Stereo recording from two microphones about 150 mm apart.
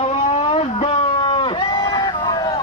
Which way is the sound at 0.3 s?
40° left (ahead or behind).